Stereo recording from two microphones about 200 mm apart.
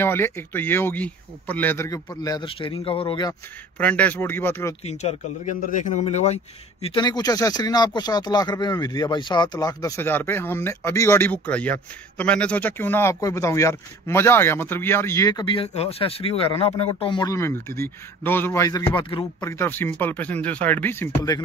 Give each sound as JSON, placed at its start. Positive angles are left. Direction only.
{"t": 0.0, "sound": "speech", "side_deg": 10}
{"t": 3.7, "sound": "speech", "side_deg": 5}
{"t": 4.8, "sound": "speech", "side_deg": 35}
{"t": 19.4, "sound": "speech", "side_deg": 10}